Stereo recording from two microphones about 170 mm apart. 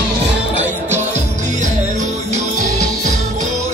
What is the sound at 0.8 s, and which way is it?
Music, 40° right (ahead or behind).